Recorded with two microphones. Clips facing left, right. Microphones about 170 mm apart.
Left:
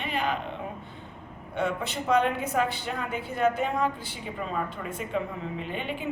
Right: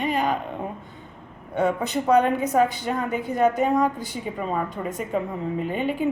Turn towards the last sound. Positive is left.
turn(degrees=-45)  # may be behind; listen again after turning